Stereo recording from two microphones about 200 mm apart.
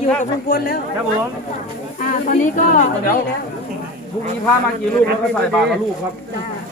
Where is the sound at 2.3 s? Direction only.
40° left (ahead or behind).